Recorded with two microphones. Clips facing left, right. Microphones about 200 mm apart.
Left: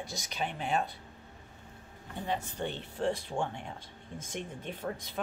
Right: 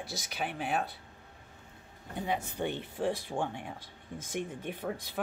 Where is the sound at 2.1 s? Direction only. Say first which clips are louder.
Right 1 dB; 15° right (ahead or behind).